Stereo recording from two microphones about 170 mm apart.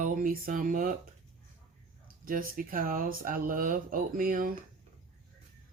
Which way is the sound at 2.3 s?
55° right (ahead or behind).